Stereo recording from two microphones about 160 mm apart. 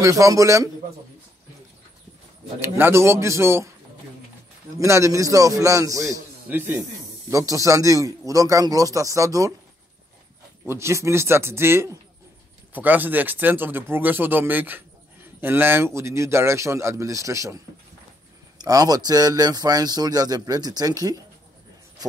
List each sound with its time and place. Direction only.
0.0 s a man's voice: 20° right (ahead or behind)
2.6 s a man's voice: 15° right (ahead or behind)
4.7 s a man's voice: 20° right (ahead or behind)
10.7 s a man's voice: 15° right (ahead or behind)
18.6 s a man's voice: 25° right (ahead or behind)